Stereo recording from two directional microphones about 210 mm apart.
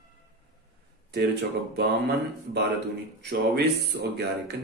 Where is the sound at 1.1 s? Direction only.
50° right (ahead or behind).